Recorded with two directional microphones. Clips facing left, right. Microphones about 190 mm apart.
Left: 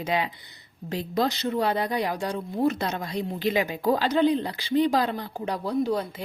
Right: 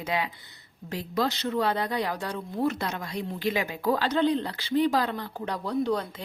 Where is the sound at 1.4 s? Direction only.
15° left (ahead or behind).